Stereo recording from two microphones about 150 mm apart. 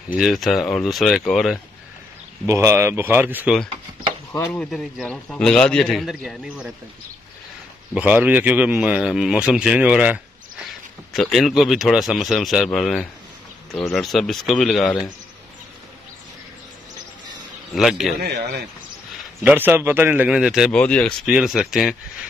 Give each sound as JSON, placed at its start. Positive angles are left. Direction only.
{"t": 0.1, "sound": "speech", "side_deg": 0}
{"t": 2.4, "sound": "speech", "side_deg": -20}
{"t": 4.5, "sound": "speech", "side_deg": 5}
{"t": 7.9, "sound": "speech", "side_deg": -10}
{"t": 17.7, "sound": "speech", "side_deg": 0}
{"t": 18.2, "sound": "speech", "side_deg": -90}
{"t": 19.4, "sound": "speech", "side_deg": -15}
{"t": 20.8, "sound": "speech", "side_deg": 10}